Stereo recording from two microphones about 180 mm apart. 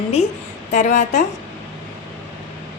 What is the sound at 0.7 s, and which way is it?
Speech, 45° left (ahead or behind).